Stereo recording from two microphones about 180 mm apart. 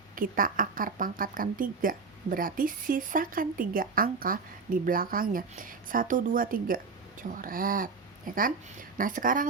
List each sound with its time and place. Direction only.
0.2 s speech: 50° right (ahead or behind)
9.0 s speech: 50° right (ahead or behind)